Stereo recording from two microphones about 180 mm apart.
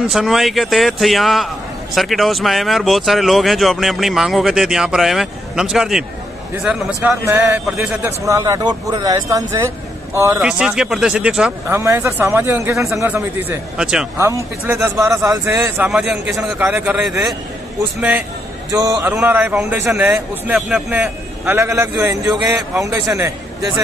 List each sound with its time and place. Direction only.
0.0 s a man's voice: centre (ahead or behind)
10.4 s a man's voice: 5° right (ahead or behind)
14.7 s a man's voice: 15° right (ahead or behind)
18.7 s a man's voice: 20° right (ahead or behind)